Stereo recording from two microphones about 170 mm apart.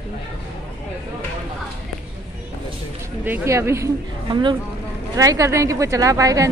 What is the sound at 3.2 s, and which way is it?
A woman's voice, 15° right (ahead or behind).